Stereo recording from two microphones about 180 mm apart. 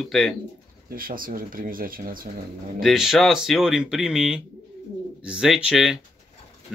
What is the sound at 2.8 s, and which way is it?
Speech, centre (ahead or behind).